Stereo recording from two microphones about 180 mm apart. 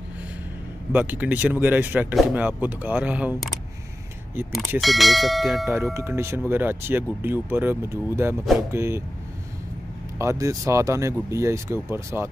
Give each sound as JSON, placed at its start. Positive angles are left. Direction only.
{"t": 0.9, "sound": "speech", "side_deg": -10}
{"t": 4.6, "sound": "clang", "side_deg": 0}
{"t": 5.9, "sound": "speech", "side_deg": -15}
{"t": 10.1, "sound": "speech", "side_deg": -15}